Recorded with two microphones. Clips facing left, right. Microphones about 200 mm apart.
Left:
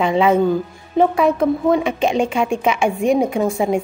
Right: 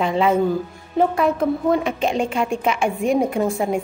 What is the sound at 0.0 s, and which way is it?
A woman's voice, centre (ahead or behind).